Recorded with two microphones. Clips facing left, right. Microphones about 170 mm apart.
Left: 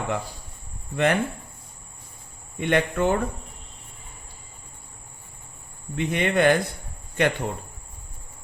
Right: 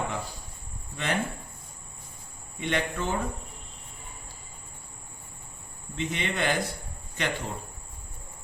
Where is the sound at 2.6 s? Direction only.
55° left (ahead or behind).